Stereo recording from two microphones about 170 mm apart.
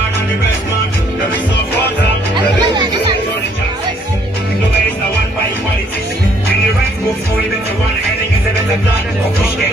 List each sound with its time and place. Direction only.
2.3 s chatter: 25° right (ahead or behind)